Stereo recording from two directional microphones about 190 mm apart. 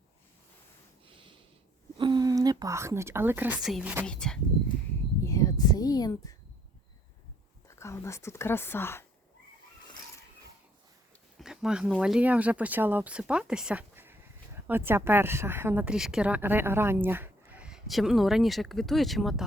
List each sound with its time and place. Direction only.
2.0 s speech: 25° right (ahead or behind); by 4.4 s 5° left (ahead or behind)
5.2 s speech: 15° left (ahead or behind)
7.8 s speech: 15° left (ahead or behind)
11.3 s speech: 5° right (ahead or behind)